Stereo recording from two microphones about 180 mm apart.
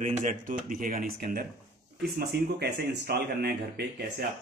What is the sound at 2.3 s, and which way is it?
A man's voice, 65° right (ahead or behind).